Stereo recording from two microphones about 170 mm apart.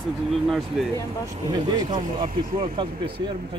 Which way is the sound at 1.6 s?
25° right (ahead or behind).